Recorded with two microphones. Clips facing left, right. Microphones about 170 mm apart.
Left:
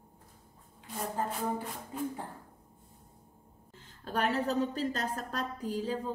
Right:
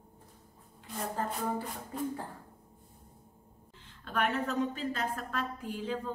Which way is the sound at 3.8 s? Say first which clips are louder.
Left 1 dB; 35° left (ahead or behind).